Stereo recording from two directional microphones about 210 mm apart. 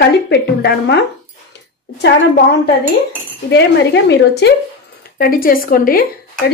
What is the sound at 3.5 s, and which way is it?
A woman's voice, 55° left (ahead or behind).